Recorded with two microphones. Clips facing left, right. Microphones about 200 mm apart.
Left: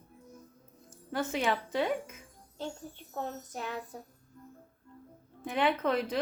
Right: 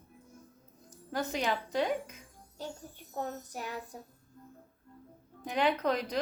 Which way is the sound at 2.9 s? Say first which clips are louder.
Even; 10° right (ahead or behind).